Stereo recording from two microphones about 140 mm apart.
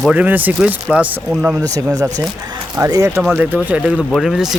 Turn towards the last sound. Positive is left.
turn(degrees=-5)  # may be behind; listen again after turning